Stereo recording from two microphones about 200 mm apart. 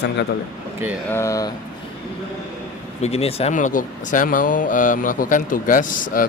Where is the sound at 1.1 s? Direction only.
15° left (ahead or behind).